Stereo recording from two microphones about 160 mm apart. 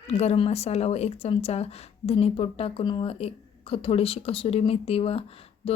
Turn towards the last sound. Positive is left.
turn(degrees=35)  # may be behind; listen again after turning